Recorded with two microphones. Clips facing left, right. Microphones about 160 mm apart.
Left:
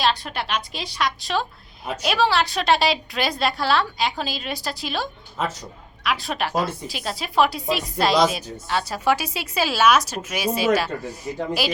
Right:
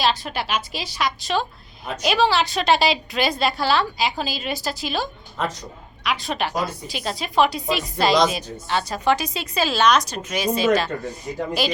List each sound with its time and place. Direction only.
0.0 s a woman's voice: centre (ahead or behind)